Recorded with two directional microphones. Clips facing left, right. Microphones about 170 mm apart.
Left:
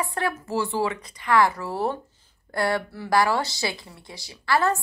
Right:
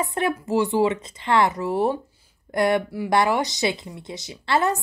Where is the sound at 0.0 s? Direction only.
20° right (ahead or behind).